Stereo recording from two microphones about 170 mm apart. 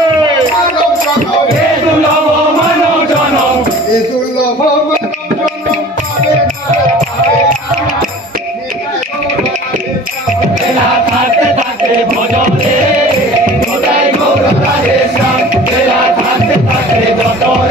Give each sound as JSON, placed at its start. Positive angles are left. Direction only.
{"t": 7.0, "sound": "music", "side_deg": -55}